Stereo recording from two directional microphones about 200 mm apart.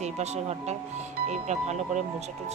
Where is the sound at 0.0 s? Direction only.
35° right (ahead or behind).